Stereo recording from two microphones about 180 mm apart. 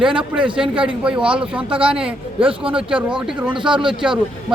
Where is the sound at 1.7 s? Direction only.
30° right (ahead or behind).